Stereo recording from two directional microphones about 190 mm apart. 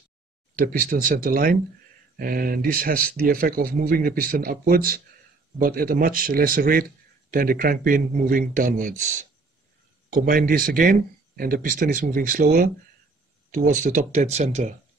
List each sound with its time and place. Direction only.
0.6 s speech: 50° right (ahead or behind)